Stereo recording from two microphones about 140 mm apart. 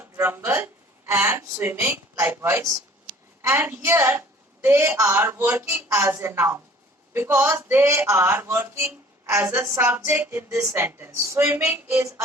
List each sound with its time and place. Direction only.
0.0 s speech: 15° right (ahead or behind)